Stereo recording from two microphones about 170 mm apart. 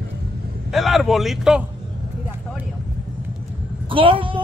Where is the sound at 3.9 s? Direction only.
30° right (ahead or behind).